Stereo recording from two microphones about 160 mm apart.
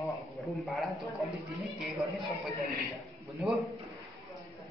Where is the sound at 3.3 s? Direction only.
Centre (ahead or behind).